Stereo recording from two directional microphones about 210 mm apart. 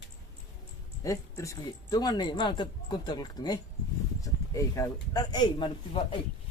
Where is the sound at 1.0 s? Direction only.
15° left (ahead or behind).